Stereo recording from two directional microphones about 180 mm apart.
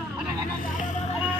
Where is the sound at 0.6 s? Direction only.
45° left (ahead or behind).